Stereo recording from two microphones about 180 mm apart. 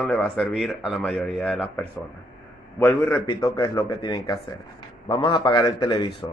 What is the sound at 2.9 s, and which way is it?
A man's voice, 10° left (ahead or behind).